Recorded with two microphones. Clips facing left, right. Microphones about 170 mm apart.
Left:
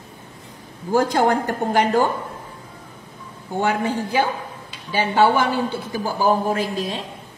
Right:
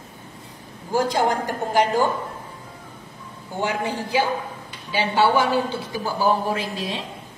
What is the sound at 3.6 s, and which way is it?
Speech, 55° left (ahead or behind).